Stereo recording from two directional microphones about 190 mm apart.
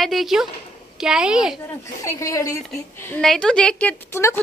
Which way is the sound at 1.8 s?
15° left (ahead or behind).